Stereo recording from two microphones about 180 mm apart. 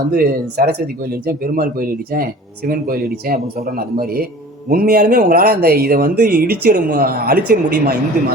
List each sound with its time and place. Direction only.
0.1 s speech: 55° right (ahead or behind)